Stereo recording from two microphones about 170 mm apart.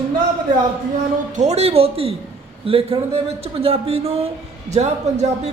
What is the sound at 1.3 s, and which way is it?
Speech, 40° right (ahead or behind).